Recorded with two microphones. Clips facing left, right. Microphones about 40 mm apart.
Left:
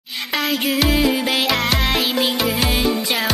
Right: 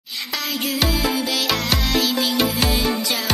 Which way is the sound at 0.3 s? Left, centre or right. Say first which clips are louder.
Left 5 dB; left.